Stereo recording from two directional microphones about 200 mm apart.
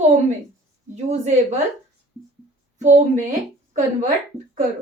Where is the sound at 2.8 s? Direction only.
35° right (ahead or behind).